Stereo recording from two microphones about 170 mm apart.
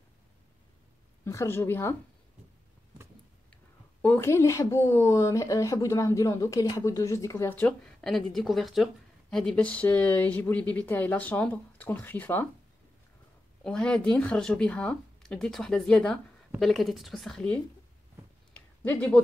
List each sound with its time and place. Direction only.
1.2 s a woman's voice: 15° left (ahead or behind)
4.0 s a woman's voice: 15° left (ahead or behind)
13.7 s speech: 5° left (ahead or behind)
18.8 s speech: 10° left (ahead or behind)